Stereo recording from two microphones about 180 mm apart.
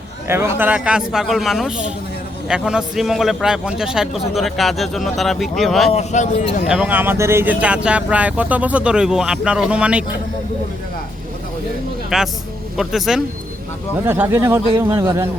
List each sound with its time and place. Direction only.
0.3 s a man's voice: 15° right (ahead or behind)
5.9 s speech: 40° left (ahead or behind)
6.7 s speech: 5° right (ahead or behind)
12.1 s a man's voice: centre (ahead or behind)
14.0 s speech: 15° right (ahead or behind)